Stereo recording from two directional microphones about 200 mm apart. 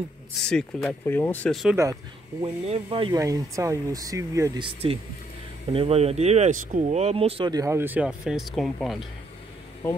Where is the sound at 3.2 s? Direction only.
15° right (ahead or behind); by 9.0 s centre (ahead or behind).